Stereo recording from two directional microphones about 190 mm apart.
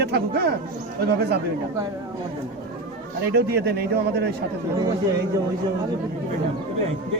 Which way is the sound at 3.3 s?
55° right (ahead or behind).